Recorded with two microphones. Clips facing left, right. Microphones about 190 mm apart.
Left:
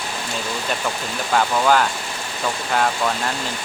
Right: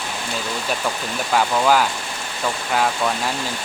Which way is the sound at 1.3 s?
5° right (ahead or behind).